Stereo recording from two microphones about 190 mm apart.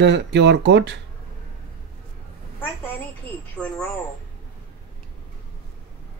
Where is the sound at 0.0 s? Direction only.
65° right (ahead or behind).